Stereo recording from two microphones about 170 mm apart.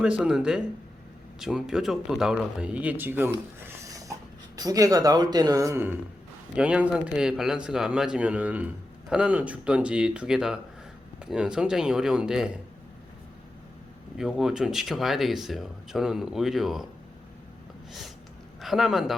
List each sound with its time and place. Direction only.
0.2 s speech: 5° right (ahead or behind)
3.6 s a sound: 20° right (ahead or behind)
4.5 s speech: 20° right (ahead or behind); by 12.5 s 5° right (ahead or behind)
14.2 s speech: centre (ahead or behind)
18.6 s a man's voice: centre (ahead or behind)